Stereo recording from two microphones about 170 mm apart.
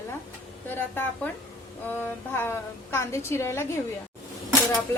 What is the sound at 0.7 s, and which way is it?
A woman's voice, 10° left (ahead or behind).